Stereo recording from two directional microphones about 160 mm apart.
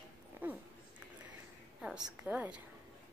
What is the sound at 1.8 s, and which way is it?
Speech, 5° right (ahead or behind).